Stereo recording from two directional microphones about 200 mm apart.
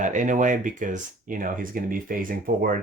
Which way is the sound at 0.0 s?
40° right (ahead or behind).